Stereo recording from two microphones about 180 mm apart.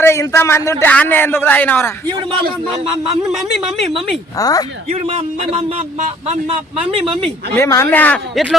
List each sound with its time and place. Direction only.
0.0 s a man's voice: 15° left (ahead or behind)
4.4 s a woman's voice: 20° left (ahead or behind)
4.9 s speech: 35° right (ahead or behind)
7.5 s a man's voice: 15° left (ahead or behind)